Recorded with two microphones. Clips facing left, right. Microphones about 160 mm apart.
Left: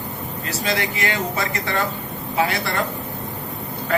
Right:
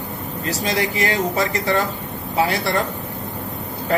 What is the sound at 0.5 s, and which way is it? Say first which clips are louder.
Speech: right 2 dB; 40° right (ahead or behind).